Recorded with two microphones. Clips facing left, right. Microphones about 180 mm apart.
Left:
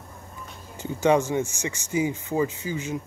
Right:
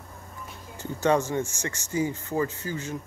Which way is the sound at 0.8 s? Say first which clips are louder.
Left 3 dB; 15° left (ahead or behind).